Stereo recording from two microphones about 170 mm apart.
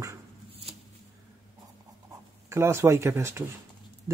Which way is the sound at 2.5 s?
15° right (ahead or behind).